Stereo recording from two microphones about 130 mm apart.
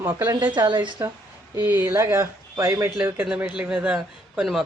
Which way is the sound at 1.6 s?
15° right (ahead or behind).